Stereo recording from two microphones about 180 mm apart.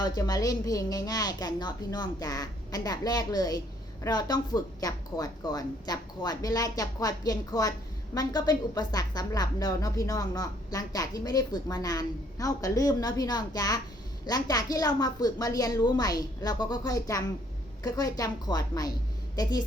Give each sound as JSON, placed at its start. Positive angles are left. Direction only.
{"t": 0.0, "sound": "a woman's voice", "side_deg": 20}